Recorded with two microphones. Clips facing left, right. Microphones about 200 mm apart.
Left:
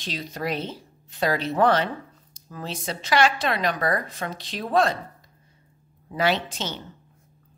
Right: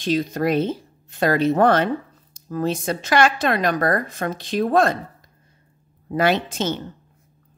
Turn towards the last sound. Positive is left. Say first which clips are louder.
# right 5 dB
turn(degrees=-50)  # may be behind; listen again after turning